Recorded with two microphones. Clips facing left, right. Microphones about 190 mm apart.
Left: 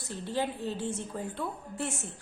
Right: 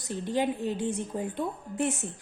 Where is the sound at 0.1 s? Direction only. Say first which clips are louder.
Right 4 dB; 15° right (ahead or behind).